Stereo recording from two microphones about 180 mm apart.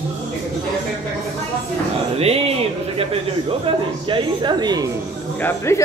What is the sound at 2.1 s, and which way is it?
Speech, 35° right (ahead or behind).